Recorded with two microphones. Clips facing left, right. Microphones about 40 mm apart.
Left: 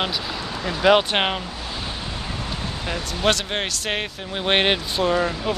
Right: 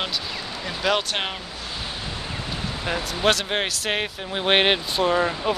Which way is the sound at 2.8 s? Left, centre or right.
Centre.